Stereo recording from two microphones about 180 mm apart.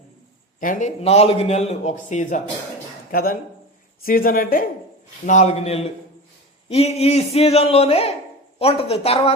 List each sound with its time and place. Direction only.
0.6 s a man's voice: 45° left (ahead or behind)
3.1 s a man's voice: 55° left (ahead or behind); by 9.3 s 35° left (ahead or behind)